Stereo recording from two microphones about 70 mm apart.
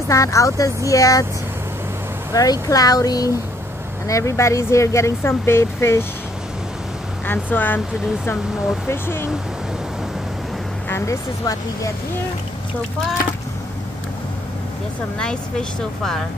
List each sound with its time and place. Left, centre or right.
0.1 s speech: left
2.3 s speech: left
7.2 s speech: left
8.8 s speech: left
10.9 s speech: left
15.1 s speech: centre